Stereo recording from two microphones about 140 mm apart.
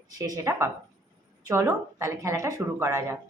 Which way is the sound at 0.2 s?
25° right (ahead or behind).